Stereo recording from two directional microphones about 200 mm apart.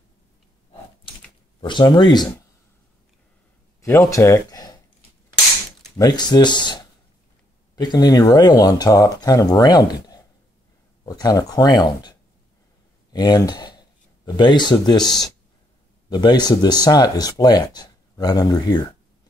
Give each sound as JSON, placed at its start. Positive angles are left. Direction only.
{"t": 1.6, "sound": "speech", "side_deg": 25}
{"t": 3.8, "sound": "speech", "side_deg": 15}
{"t": 5.9, "sound": "speech", "side_deg": 20}
{"t": 16.1, "sound": "speech", "side_deg": 20}